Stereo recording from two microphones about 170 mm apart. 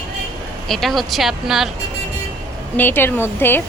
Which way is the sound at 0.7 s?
Centre (ahead or behind).